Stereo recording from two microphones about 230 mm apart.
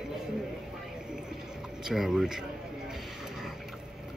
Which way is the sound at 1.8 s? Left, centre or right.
Centre.